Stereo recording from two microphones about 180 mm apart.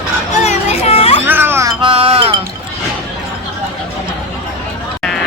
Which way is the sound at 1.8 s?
30° right (ahead or behind).